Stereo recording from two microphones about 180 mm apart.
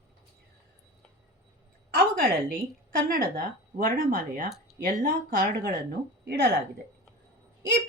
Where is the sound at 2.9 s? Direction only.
50° right (ahead or behind).